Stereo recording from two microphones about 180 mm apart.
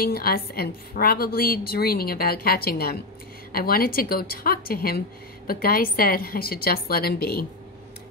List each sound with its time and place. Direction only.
0.0 s a woman's voice: 55° left (ahead or behind)